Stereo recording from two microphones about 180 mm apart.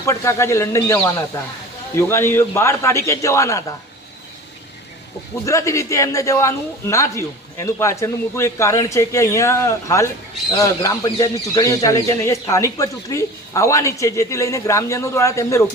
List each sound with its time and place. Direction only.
0.0 s speech: 15° left (ahead or behind)
5.5 s speech: 15° left (ahead or behind)